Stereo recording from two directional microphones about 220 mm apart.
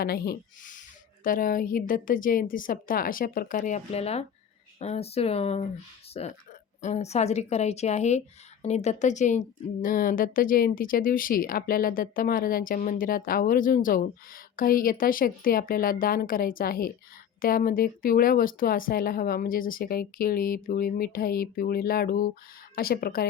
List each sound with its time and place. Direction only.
0.0 s speech: 45° left (ahead or behind)